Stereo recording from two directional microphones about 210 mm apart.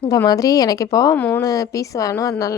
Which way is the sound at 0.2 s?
15° left (ahead or behind).